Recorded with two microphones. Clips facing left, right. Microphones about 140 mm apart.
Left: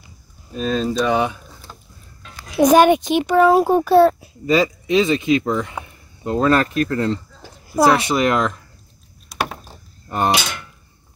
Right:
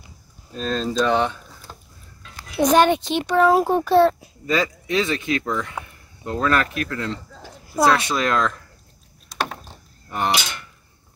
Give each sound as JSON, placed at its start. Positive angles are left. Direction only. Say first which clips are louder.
{"t": 0.5, "sound": "a child's voice", "louder": "left 4 dB", "side_deg": 5}
{"t": 2.5, "sound": "a child's voice", "louder": "left 4 dB", "side_deg": 10}
{"t": 4.5, "sound": "speech", "louder": "left 5 dB", "side_deg": 20}
{"t": 7.8, "sound": "speech", "louder": "left 3 dB", "side_deg": 25}
{"t": 10.0, "sound": "a sound", "louder": "left 4 dB", "side_deg": 40}